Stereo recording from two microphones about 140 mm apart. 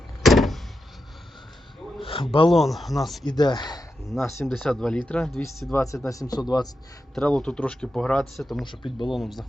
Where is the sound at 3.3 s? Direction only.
30° left (ahead or behind).